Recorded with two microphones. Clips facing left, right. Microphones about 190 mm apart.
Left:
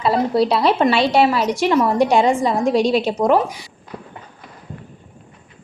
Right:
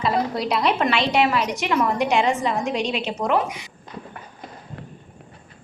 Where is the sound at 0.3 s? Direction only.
30° left (ahead or behind).